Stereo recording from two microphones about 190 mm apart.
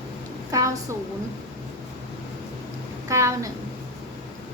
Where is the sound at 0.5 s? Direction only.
15° right (ahead or behind).